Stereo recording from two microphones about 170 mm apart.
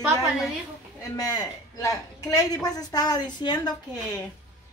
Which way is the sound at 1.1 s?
20° left (ahead or behind).